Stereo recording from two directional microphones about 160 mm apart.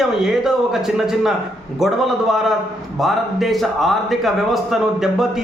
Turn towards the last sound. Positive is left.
turn(degrees=0)  # may be behind; listen again after turning